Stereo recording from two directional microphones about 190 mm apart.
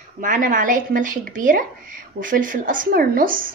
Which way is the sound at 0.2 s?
45° right (ahead or behind).